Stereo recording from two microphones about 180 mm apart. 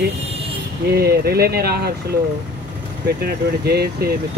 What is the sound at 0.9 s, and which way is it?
Speech, 60° right (ahead or behind).